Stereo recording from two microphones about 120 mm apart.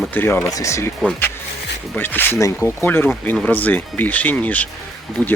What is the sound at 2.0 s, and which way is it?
Speech, 15° left (ahead or behind).